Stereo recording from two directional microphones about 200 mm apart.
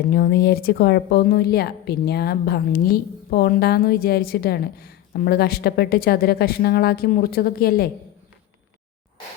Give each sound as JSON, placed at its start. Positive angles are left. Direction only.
{"t": 0.1, "sound": "speech", "side_deg": 50}